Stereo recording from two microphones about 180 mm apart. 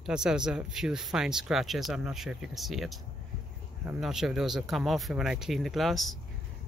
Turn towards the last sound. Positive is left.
turn(degrees=0)  # may be behind; listen again after turning